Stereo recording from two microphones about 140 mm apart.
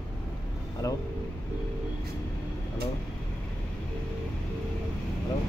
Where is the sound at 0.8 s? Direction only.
25° left (ahead or behind).